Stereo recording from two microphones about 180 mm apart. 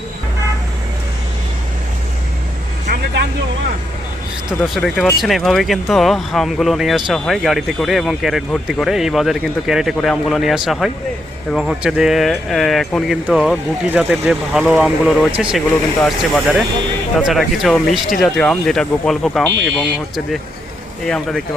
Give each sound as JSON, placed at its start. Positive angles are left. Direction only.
{"t": 4.6, "sound": "speech", "side_deg": 0}